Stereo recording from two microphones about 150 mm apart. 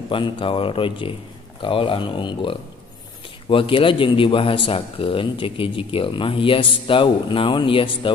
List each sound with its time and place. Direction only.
0.1 s speech: 35° left (ahead or behind)